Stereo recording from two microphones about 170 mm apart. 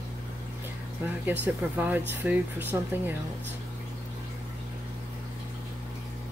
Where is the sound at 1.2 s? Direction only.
10° right (ahead or behind).